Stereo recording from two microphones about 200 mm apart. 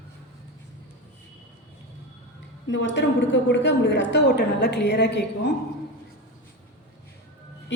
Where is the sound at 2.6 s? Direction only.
65° left (ahead or behind).